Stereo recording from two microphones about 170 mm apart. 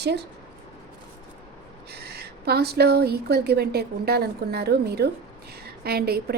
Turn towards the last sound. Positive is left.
turn(degrees=-65)  # may be behind; listen again after turning